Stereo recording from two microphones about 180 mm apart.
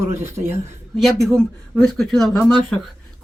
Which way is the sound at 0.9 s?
Centre (ahead or behind).